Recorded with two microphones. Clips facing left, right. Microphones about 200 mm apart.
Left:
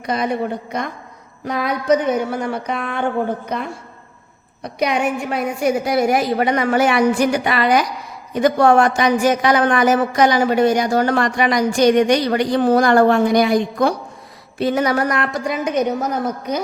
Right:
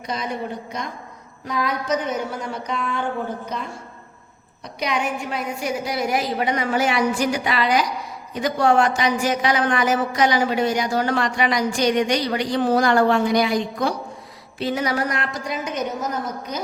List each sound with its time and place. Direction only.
0.0 s a woman's voice: 60° left (ahead or behind)